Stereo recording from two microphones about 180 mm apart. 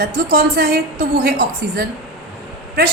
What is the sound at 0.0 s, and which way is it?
A woman's voice, 60° right (ahead or behind).